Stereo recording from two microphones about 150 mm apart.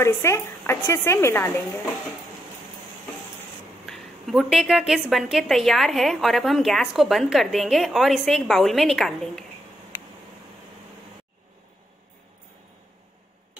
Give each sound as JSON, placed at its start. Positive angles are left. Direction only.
{"t": 0.0, "sound": "speech", "side_deg": 15}
{"t": 3.8, "sound": "a woman's voice", "side_deg": 0}